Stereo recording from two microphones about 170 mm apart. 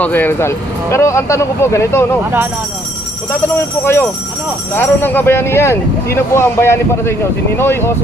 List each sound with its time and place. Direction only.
0.0 s speech: 10° left (ahead or behind)
3.8 s speech: 15° left (ahead or behind)